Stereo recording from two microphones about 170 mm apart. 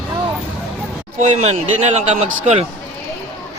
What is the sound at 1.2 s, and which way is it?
A man's voice, 40° right (ahead or behind).